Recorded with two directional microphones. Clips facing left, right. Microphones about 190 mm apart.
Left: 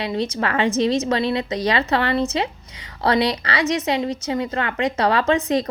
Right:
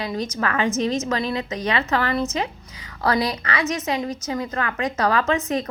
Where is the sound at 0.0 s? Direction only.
30° left (ahead or behind).